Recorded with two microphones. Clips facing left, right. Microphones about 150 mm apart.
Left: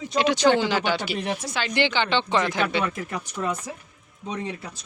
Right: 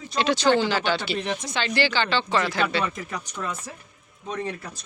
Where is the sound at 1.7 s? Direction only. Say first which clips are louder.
Left 1 dB; 20° left (ahead or behind).